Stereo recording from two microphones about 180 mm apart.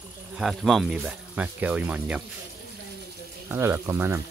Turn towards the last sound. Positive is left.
turn(degrees=-10)  # may be behind; listen again after turning